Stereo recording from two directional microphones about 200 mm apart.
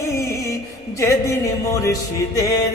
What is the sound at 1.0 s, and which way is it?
Speech, 15° left (ahead or behind).